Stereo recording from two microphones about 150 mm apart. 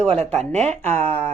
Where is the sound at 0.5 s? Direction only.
50° right (ahead or behind).